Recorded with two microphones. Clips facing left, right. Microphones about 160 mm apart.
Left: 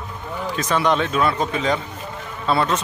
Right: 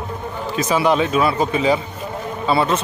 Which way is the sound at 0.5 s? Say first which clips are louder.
Right 3 dB; 5° right (ahead or behind).